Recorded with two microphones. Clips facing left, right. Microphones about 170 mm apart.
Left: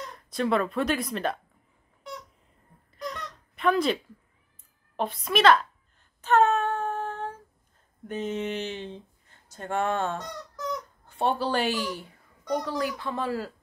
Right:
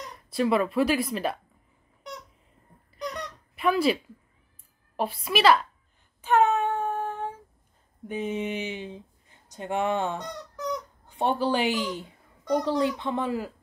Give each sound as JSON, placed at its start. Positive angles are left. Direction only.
{"t": 0.3, "sound": "speech", "side_deg": -5}
{"t": 3.5, "sound": "speech", "side_deg": -5}
{"t": 6.2, "sound": "child singing", "side_deg": -10}
{"t": 8.1, "sound": "speech", "side_deg": -10}